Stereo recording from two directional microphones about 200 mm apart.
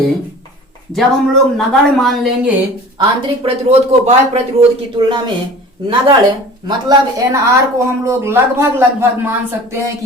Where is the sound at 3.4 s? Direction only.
30° right (ahead or behind).